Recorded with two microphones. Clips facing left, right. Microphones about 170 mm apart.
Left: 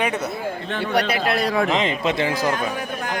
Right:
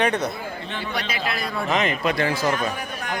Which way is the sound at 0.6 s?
55° left (ahead or behind).